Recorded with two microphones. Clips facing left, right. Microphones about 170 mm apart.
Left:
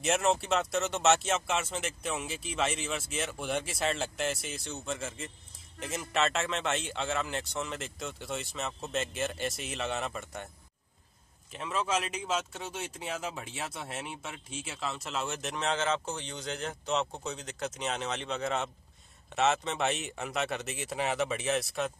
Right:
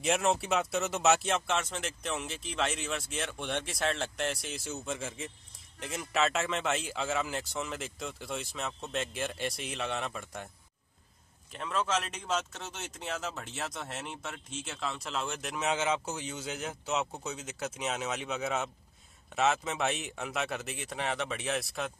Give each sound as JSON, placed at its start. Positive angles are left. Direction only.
{"t": 0.0, "sound": "speech", "side_deg": 0}
{"t": 11.5, "sound": "speech", "side_deg": 5}